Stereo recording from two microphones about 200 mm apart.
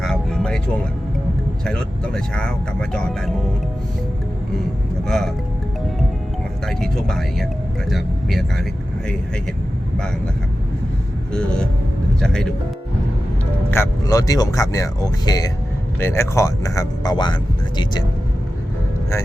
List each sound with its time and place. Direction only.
0.0 s music: centre (ahead or behind)
1.6 s speech: 5° left (ahead or behind)
5.0 s speech: centre (ahead or behind)
6.7 s speech: centre (ahead or behind)
12.2 s speech: 5° left (ahead or behind)
13.7 s speech: 15° left (ahead or behind)